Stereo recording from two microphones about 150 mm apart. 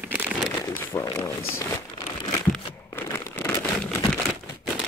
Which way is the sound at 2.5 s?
15° left (ahead or behind).